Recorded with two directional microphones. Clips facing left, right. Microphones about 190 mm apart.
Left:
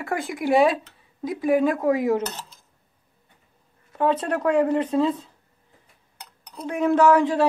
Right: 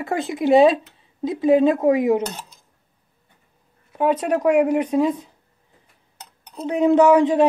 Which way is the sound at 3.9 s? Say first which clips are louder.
Right 3 dB; 10° right (ahead or behind).